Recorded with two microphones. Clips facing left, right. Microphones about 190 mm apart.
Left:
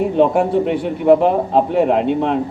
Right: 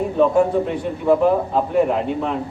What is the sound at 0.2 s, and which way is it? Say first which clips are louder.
A man's voice: even; 70° left (ahead or behind).